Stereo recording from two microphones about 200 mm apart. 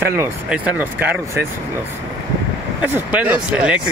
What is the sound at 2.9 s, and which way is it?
Speech, 10° right (ahead or behind).